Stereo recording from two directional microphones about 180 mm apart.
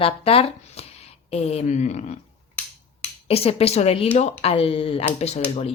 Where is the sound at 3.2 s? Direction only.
35° left (ahead or behind).